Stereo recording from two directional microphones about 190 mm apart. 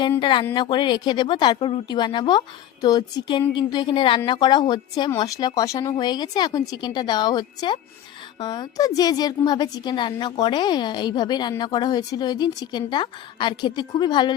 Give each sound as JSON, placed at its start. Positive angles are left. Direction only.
{"t": 0.2, "sound": "a woman's voice", "side_deg": 25}